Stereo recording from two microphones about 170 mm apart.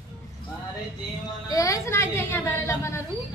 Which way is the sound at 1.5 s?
20° left (ahead or behind).